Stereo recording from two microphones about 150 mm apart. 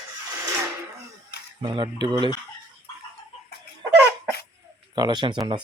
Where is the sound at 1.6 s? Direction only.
30° right (ahead or behind).